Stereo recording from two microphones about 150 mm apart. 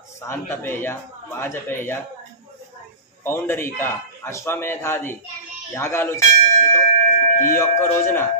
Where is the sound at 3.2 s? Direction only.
15° left (ahead or behind).